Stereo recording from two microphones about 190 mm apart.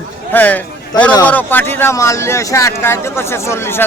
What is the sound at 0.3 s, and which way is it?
A man's voice, 10° left (ahead or behind).